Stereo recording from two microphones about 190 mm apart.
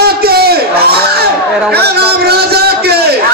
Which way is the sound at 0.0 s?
55° right (ahead or behind).